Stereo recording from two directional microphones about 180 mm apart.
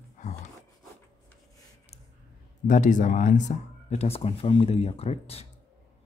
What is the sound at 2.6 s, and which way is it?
A man's voice, 45° left (ahead or behind).